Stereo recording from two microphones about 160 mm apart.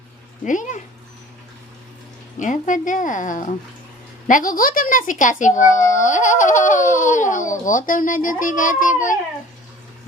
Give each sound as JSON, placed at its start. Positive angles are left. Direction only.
{"t": 0.4, "sound": "a woman's voice", "side_deg": 50}
{"t": 2.4, "sound": "a woman's voice", "side_deg": 55}